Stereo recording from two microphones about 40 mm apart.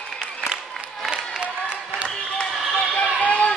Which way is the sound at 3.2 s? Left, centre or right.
Left.